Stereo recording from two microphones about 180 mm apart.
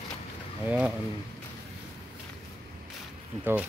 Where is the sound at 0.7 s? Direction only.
5° right (ahead or behind).